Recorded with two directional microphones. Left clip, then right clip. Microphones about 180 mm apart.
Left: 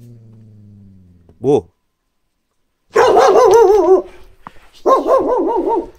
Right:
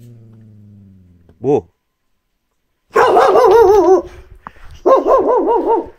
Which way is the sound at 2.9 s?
Centre (ahead or behind).